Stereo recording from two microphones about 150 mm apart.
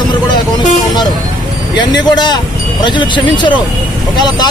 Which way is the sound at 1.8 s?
30° left (ahead or behind).